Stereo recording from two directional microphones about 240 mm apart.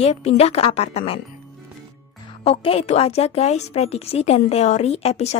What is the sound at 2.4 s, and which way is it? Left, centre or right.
A woman's voice, left.